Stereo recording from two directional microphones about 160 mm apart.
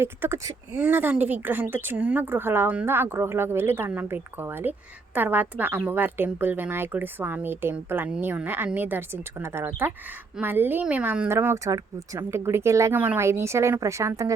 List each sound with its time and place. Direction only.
0.0 s a woman's voice: 15° right (ahead or behind)